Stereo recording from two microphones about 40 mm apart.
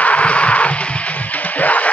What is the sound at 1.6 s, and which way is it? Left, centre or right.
Music, left.